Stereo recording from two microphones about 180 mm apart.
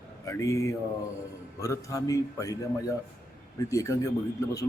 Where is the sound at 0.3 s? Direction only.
15° left (ahead or behind).